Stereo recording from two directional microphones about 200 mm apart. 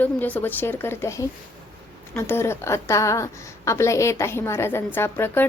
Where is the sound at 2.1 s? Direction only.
10° left (ahead or behind).